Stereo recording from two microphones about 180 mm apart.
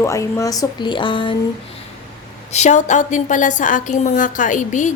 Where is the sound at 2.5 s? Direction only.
40° left (ahead or behind).